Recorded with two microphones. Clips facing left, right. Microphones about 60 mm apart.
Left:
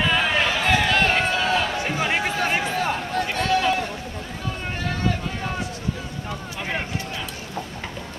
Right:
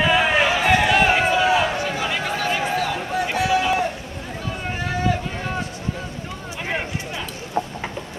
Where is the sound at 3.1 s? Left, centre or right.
Centre.